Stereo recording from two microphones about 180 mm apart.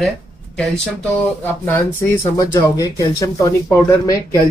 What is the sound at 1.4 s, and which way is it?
Speech, 10° left (ahead or behind).